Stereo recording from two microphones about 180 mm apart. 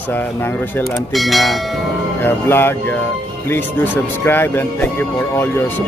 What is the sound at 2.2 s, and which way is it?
Speech, 10° left (ahead or behind).